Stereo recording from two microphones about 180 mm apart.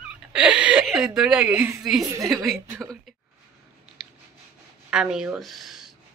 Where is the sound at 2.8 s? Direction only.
5° left (ahead or behind).